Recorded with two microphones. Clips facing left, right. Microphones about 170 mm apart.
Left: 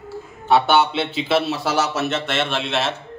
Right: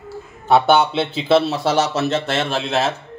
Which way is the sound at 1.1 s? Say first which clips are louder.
Right 5 dB; 35° right (ahead or behind).